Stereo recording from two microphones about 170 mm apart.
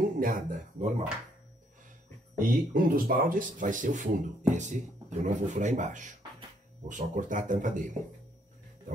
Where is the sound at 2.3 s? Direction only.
60° right (ahead or behind).